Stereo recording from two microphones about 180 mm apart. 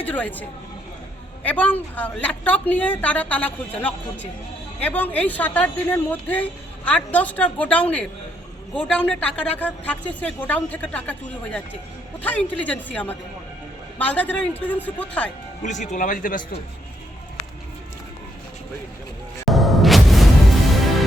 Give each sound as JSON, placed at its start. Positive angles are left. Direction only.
{"t": 0.0, "sound": "a woman's voice", "side_deg": 10}
{"t": 1.5, "sound": "a woman's voice", "side_deg": 10}
{"t": 15.6, "sound": "speech", "side_deg": 40}
{"t": 19.5, "sound": "music", "side_deg": 0}